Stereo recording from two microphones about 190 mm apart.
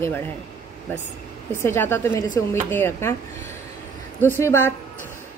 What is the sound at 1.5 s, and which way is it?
Speech, 10° left (ahead or behind).